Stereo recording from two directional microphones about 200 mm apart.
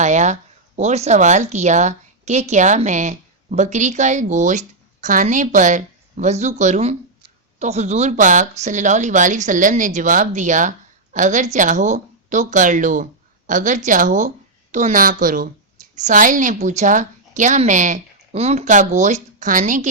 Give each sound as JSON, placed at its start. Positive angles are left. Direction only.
{"t": 0.0, "sound": "a woman's voice", "side_deg": -35}